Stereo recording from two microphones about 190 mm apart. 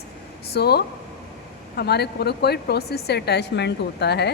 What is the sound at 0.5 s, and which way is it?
Speech, 55° left (ahead or behind).